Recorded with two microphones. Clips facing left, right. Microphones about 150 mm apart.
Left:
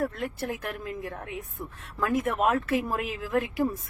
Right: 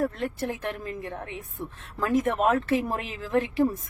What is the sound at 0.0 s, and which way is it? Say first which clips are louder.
Speech: right 2 dB; 30° right (ahead or behind).